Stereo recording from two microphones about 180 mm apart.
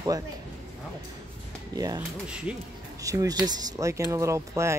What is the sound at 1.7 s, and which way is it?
Speech, 20° right (ahead or behind).